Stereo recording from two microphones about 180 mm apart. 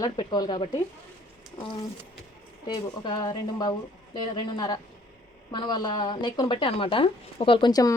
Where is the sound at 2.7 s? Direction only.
25° left (ahead or behind).